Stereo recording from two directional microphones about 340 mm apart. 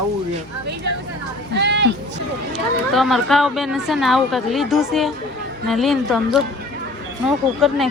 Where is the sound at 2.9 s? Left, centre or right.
Centre.